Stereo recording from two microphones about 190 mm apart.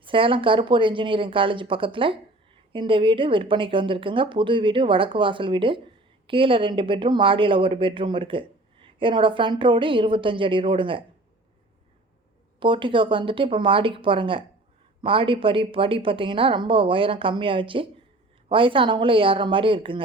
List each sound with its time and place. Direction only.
0.0 s speech: 25° right (ahead or behind)
12.5 s speech: 25° right (ahead or behind)